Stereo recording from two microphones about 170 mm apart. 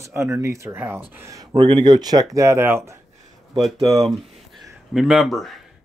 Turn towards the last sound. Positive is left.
turn(degrees=0)  # may be behind; listen again after turning